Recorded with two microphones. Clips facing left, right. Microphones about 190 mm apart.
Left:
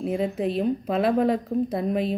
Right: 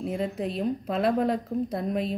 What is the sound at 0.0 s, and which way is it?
A woman's voice, 5° left (ahead or behind).